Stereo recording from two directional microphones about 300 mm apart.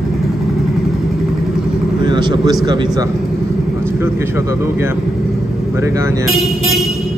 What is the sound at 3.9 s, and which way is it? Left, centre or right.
Speech, centre.